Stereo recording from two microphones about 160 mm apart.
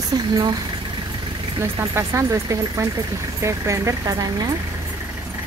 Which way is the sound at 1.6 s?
15° right (ahead or behind).